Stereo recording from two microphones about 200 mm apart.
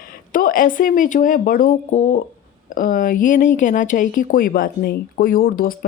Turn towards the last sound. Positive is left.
turn(degrees=45)  # may be behind; listen again after turning